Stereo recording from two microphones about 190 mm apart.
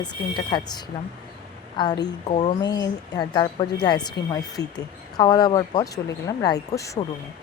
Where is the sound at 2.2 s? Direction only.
35° left (ahead or behind).